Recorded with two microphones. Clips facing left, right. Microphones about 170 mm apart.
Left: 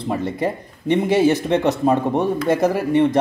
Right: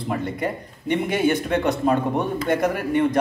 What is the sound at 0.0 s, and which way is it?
A man's voice, 25° left (ahead or behind).